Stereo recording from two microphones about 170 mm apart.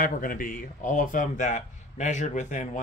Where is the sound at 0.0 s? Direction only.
55° left (ahead or behind).